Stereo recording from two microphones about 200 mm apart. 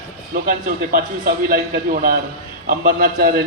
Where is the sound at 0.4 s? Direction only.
45° right (ahead or behind).